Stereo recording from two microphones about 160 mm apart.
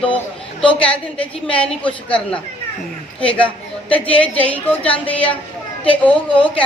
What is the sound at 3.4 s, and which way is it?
A man's voice, 10° left (ahead or behind).